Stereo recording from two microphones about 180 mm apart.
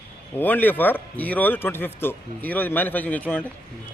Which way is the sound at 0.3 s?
10° left (ahead or behind).